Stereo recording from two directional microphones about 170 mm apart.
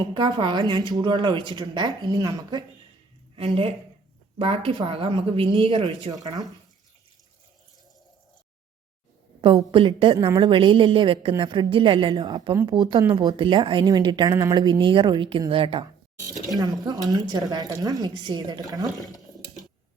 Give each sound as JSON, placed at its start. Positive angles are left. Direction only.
{"t": 0.1, "sound": "a woman's voice", "side_deg": -30}
{"t": 3.3, "sound": "a woman's voice", "side_deg": -35}
{"t": 9.7, "sound": "a woman's voice", "side_deg": -30}
{"t": 19.0, "sound": "water", "side_deg": 20}